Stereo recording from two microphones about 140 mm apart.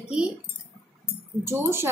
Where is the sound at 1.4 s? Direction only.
15° right (ahead or behind).